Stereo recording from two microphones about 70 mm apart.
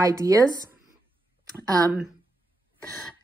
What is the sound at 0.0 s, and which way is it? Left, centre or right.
Speech, right.